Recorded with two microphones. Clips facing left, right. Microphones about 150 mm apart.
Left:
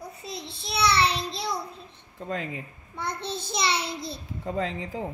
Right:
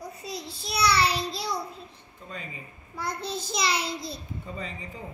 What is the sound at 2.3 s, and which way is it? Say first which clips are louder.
Speech: left 9 dB; 90° left.